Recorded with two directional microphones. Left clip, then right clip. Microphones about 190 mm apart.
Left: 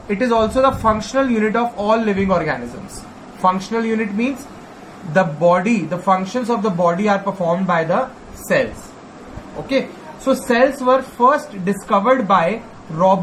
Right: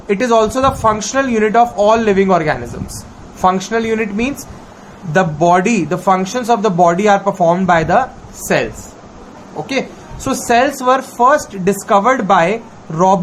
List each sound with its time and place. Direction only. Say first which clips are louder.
0.1 s speech: right 4 dB; 60° right (ahead or behind)
10.5 s speech: right 3 dB; 60° right (ahead or behind)